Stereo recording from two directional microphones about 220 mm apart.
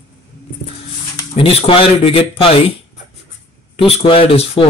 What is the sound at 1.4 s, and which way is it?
A man's voice, 25° left (ahead or behind).